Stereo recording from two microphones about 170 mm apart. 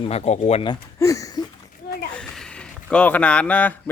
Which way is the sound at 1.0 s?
20° left (ahead or behind).